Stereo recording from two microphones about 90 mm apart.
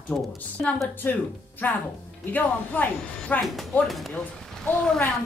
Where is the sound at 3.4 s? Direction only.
Centre (ahead or behind).